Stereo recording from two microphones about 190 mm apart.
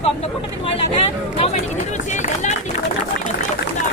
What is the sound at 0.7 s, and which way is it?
Speech, 30° left (ahead or behind).